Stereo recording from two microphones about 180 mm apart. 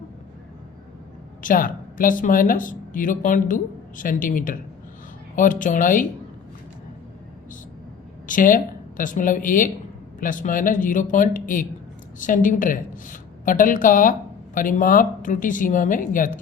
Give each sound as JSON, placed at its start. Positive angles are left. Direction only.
{"t": 1.4, "sound": "a woman's voice", "side_deg": 50}
{"t": 8.3, "sound": "a woman's voice", "side_deg": 45}